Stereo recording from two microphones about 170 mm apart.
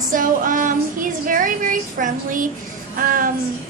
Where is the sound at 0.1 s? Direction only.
50° right (ahead or behind).